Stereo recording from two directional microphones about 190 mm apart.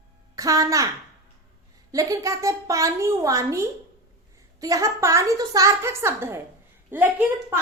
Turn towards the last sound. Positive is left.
turn(degrees=-10)  # may be behind; listen again after turning